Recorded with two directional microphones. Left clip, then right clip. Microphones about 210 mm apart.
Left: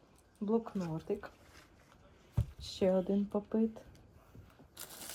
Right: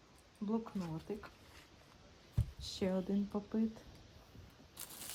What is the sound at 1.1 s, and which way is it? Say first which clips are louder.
Speech: left 8 dB; 5° right (ahead or behind).